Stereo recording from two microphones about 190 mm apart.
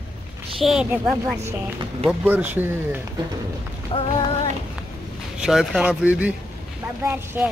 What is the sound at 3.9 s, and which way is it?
Music, 30° left (ahead or behind).